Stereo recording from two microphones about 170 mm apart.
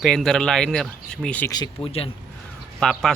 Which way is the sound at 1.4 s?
25° left (ahead or behind).